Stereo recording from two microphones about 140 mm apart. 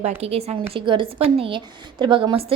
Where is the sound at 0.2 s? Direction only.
45° right (ahead or behind).